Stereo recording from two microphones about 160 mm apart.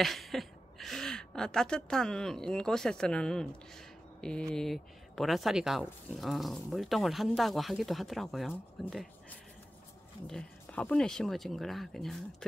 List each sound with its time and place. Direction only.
0.0 s a woman's voice: centre (ahead or behind)
10.2 s a woman's voice: 5° left (ahead or behind)